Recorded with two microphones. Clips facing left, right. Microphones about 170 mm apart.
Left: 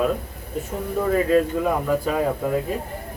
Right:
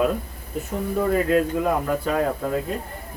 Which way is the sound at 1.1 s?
Centre (ahead or behind).